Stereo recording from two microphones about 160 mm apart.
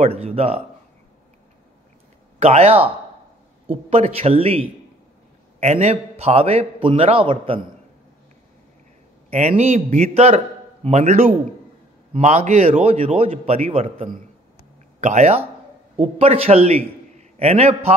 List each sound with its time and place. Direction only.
0.0 s a man's voice: 40° right (ahead or behind)
2.3 s speech: 40° right (ahead or behind)
3.9 s a man's voice: 40° right (ahead or behind)
9.3 s a man's voice: 40° right (ahead or behind)